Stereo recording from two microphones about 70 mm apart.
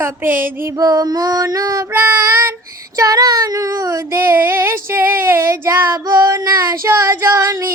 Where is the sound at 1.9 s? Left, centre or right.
Right.